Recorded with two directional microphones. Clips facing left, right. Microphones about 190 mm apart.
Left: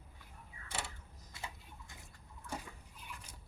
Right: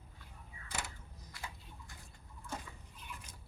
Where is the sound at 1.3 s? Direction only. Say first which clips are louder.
Left 1 dB; 25° left (ahead or behind).